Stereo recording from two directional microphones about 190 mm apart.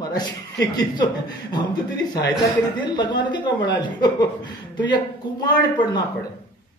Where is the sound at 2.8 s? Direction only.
25° left (ahead or behind).